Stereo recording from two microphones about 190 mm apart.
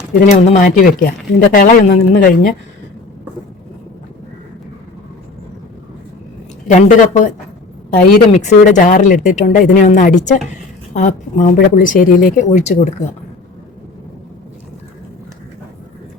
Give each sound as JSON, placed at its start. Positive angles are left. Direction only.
{"t": 0.3, "sound": "speech", "side_deg": 35}
{"t": 6.7, "sound": "speech", "side_deg": 40}